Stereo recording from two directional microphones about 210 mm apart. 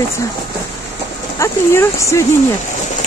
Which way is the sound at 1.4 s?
15° left (ahead or behind).